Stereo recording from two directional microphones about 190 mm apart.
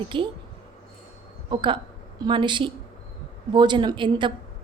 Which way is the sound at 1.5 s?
25° right (ahead or behind).